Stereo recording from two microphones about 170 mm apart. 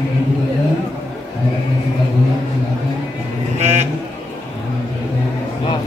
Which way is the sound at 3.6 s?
40° right (ahead or behind).